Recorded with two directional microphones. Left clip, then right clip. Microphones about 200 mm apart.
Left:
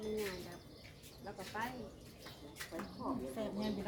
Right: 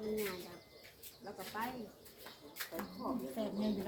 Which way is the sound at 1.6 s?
10° right (ahead or behind).